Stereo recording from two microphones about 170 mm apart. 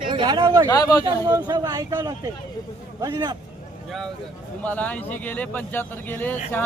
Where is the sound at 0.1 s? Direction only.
30° right (ahead or behind).